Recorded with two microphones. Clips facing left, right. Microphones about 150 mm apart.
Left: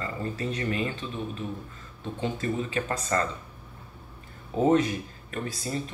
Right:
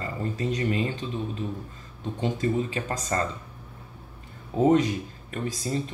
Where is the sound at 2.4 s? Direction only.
25° right (ahead or behind).